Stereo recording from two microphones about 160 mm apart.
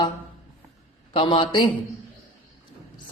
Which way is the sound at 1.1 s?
35° left (ahead or behind).